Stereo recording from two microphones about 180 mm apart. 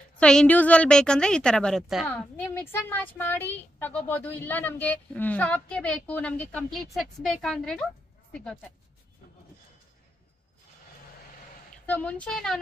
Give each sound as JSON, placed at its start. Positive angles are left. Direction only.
{"t": 0.2, "sound": "a woman's voice", "side_deg": 5}
{"t": 11.8, "sound": "speech", "side_deg": 10}